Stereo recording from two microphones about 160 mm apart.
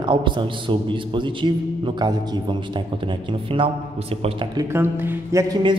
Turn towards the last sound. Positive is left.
turn(degrees=-25)  # may be behind; listen again after turning